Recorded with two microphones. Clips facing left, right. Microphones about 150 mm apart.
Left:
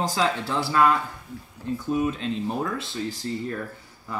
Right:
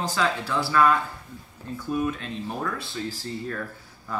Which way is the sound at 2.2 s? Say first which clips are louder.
Left 4 dB; 25° left (ahead or behind).